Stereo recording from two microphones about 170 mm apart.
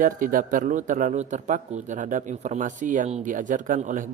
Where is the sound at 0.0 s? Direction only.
55° right (ahead or behind).